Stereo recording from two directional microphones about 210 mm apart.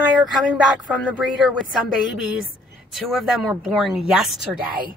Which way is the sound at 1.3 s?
Centre (ahead or behind).